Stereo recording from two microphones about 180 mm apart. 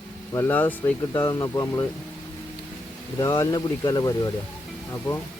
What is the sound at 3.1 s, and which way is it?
Speech, 15° left (ahead or behind).